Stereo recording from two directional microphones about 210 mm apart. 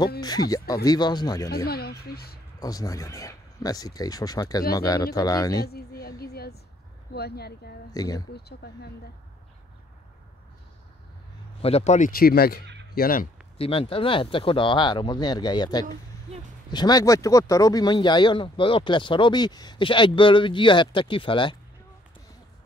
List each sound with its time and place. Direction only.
0.2 s speech: 20° left (ahead or behind)
1.7 s speech: 50° left (ahead or behind)
2.6 s speech: 15° left (ahead or behind)
5.7 s a sound: 50° left (ahead or behind)
7.2 s speech: 50° left (ahead or behind)
7.9 s speech: 15° left (ahead or behind)
8.3 s speech: 50° left (ahead or behind)
11.6 s speech: 30° left (ahead or behind)
13.6 s speech: 25° left (ahead or behind)